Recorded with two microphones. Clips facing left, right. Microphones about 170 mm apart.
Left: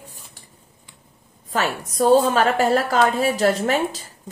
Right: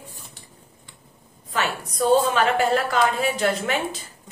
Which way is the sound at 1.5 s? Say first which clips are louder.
Left 3 dB; 40° left (ahead or behind).